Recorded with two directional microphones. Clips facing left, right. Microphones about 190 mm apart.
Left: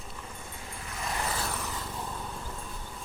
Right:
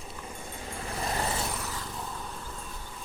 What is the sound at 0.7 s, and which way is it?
Vehicle, 35° right (ahead or behind).